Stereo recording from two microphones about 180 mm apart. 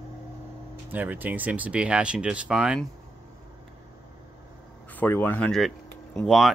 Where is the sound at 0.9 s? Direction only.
10° right (ahead or behind).